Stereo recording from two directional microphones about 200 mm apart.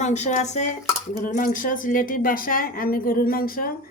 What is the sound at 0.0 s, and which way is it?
A woman's voice, 35° left (ahead or behind).